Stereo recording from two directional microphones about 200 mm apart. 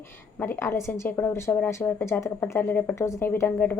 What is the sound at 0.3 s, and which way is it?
A woman's voice, 10° left (ahead or behind).